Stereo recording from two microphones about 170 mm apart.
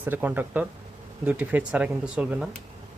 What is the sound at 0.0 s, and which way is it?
Speech, 10° right (ahead or behind).